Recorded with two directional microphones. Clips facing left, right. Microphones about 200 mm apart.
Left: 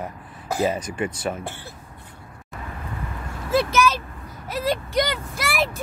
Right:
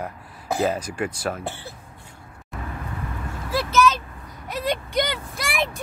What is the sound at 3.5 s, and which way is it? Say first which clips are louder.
Vehicle: left 5 dB; 25° left (ahead or behind).